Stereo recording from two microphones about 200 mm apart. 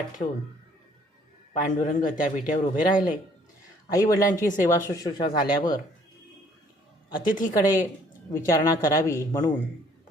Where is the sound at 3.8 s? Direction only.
20° left (ahead or behind).